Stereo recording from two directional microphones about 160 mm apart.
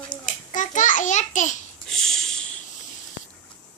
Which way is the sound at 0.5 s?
50° left (ahead or behind).